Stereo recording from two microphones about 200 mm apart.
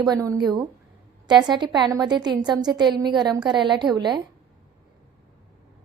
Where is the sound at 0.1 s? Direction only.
20° right (ahead or behind).